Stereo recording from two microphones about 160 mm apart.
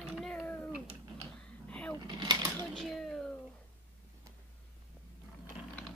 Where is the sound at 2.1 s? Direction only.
30° right (ahead or behind).